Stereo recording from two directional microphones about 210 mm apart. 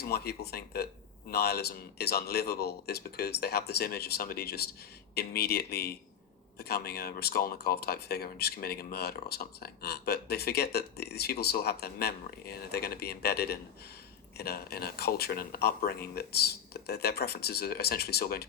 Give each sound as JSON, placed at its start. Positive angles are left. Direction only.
{"t": 0.0, "sound": "speech", "side_deg": 50}